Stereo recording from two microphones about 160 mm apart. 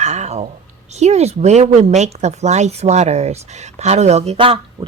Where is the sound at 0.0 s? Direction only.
45° right (ahead or behind).